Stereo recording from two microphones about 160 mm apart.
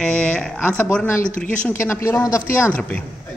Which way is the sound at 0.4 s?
10° left (ahead or behind).